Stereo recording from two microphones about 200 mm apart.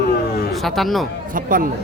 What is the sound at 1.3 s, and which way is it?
Speech, 45° right (ahead or behind).